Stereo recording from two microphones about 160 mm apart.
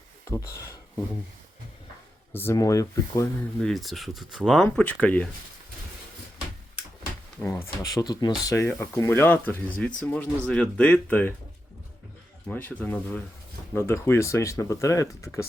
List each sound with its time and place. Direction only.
0.3 s speech: 20° left (ahead or behind)
2.3 s speech: 15° left (ahead or behind)
3.6 s speech: centre (ahead or behind)
7.4 s speech: 15° left (ahead or behind)
12.5 s speech: 10° left (ahead or behind)